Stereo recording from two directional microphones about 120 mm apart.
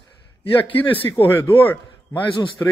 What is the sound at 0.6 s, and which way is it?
A man's voice, 45° left (ahead or behind).